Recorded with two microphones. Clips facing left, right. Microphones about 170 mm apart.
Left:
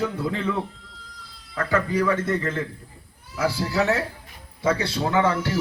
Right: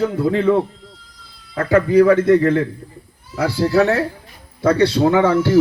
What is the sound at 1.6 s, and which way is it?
Speech, 65° right (ahead or behind).